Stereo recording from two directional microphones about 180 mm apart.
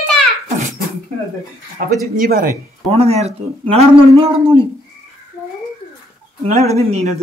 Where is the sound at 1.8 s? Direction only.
45° right (ahead or behind).